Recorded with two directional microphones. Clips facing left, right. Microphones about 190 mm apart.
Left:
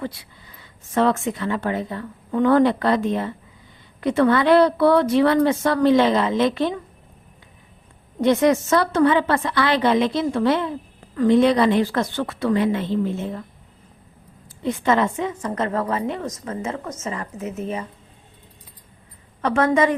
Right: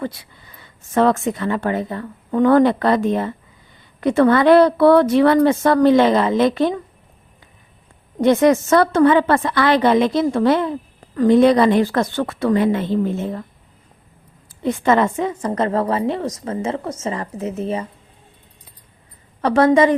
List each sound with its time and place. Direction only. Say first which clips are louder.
0.9 s a woman's voice: right 3 dB; 45° right (ahead or behind)
8.2 s a woman's voice: right 3 dB; 50° right (ahead or behind)
14.6 s a woman's voice: right 3 dB; 50° right (ahead or behind)
15.4 s a woman's voice: right 6 dB; 35° right (ahead or behind)
19.4 s a woman's voice: right 5 dB; 35° right (ahead or behind)